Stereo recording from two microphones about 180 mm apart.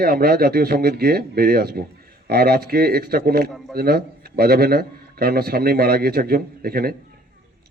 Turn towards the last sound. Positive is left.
turn(degrees=-60)  # may be behind; listen again after turning